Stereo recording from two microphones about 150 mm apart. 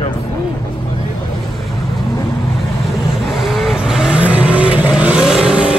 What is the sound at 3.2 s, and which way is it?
Vehicle, centre (ahead or behind).